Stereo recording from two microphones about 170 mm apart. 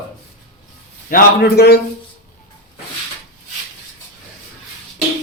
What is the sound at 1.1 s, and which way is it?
Speech, 65° left (ahead or behind).